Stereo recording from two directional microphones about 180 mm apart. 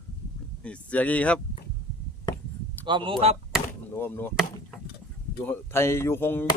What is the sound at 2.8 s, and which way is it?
Speech, 25° right (ahead or behind).